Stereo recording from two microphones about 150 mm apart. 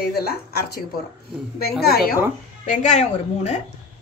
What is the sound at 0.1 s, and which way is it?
Speech, 90° left.